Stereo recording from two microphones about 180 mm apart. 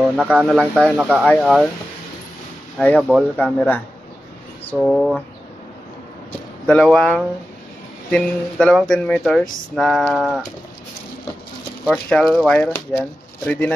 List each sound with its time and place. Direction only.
0.1 s speech: 5° right (ahead or behind)
2.8 s speech: 5° left (ahead or behind)
4.6 s speech: 5° left (ahead or behind)
6.7 s speech: 5° left (ahead or behind)
11.9 s speech: 5° left (ahead or behind)